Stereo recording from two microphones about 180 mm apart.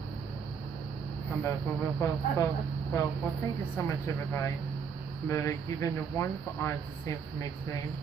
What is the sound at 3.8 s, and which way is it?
Speech, 15° left (ahead or behind).